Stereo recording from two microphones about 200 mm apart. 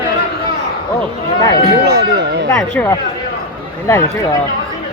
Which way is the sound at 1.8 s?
55° right (ahead or behind).